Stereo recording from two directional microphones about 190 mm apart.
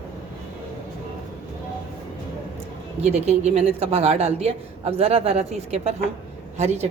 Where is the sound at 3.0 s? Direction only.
35° right (ahead or behind).